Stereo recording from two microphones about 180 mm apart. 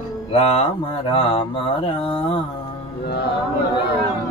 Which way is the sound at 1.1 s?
30° left (ahead or behind).